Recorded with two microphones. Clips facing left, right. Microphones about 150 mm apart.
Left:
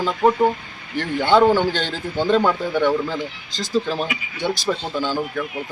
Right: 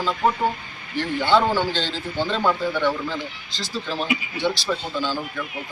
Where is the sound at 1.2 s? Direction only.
15° left (ahead or behind).